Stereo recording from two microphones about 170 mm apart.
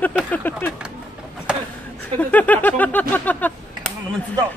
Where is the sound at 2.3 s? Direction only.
10° left (ahead or behind).